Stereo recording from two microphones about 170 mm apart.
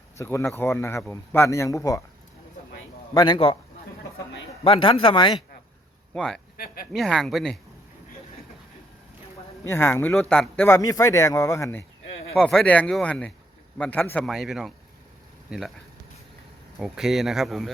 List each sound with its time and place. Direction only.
0.2 s a man's voice: 15° left (ahead or behind)
3.2 s speech: 30° left (ahead or behind)
4.6 s speech: 30° left (ahead or behind)
6.1 s speech: 5° left (ahead or behind)
9.6 s a man's voice: 15° left (ahead or behind)
10.7 s speech: 20° left (ahead or behind)
12.3 s a man's voice: 5° left (ahead or behind)
14.3 s speech: centre (ahead or behind)
16.7 s speech: centre (ahead or behind)